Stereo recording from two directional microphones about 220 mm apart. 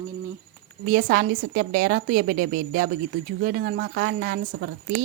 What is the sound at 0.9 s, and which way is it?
A woman's voice, 40° right (ahead or behind).